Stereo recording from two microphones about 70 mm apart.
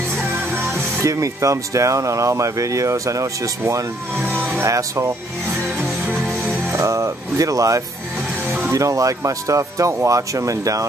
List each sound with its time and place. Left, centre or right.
0.3 s music: right
1.0 s speech: right
4.3 s music: right
4.6 s speech: right
5.8 s music: right
6.7 s speech: right